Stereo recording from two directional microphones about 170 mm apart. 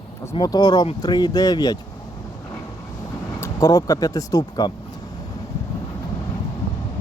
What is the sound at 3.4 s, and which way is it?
Speech, 20° left (ahead or behind).